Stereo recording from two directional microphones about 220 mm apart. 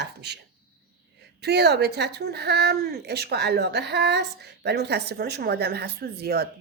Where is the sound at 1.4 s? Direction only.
50° right (ahead or behind).